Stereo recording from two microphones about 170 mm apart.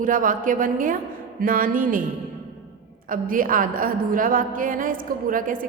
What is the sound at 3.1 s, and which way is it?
A woman's voice, 55° right (ahead or behind).